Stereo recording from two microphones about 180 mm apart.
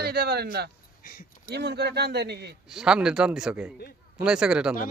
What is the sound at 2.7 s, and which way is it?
Speech, 5° right (ahead or behind).